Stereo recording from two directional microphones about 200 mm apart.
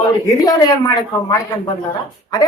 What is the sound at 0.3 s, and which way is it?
A woman's voice, 20° left (ahead or behind).